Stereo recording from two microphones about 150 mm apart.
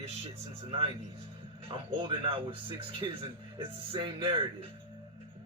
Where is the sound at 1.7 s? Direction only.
35° right (ahead or behind).